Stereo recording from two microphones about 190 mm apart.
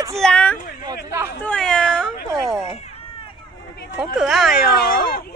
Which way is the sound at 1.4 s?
5° left (ahead or behind).